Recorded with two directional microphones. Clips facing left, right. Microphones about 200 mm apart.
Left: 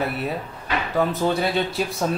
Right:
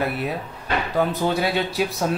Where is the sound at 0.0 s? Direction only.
Centre (ahead or behind).